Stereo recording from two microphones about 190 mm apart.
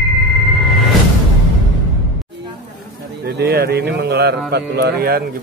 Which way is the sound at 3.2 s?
60° right (ahead or behind).